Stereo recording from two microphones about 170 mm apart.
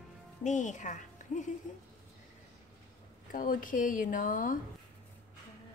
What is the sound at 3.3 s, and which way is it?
Speech, 55° left (ahead or behind).